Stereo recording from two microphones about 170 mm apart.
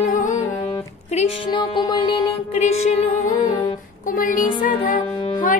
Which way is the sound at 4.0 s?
50° left (ahead or behind).